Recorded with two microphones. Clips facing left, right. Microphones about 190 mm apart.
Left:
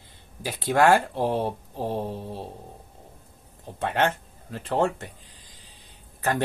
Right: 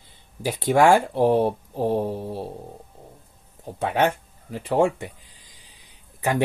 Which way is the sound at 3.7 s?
10° right (ahead or behind).